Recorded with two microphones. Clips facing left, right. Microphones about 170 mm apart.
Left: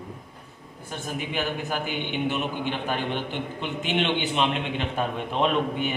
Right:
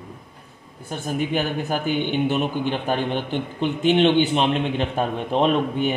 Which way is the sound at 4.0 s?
35° right (ahead or behind).